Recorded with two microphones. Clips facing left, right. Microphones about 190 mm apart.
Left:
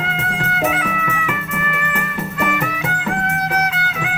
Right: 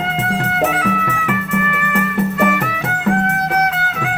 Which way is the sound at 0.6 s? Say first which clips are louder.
Right 1 dB; 65° right (ahead or behind).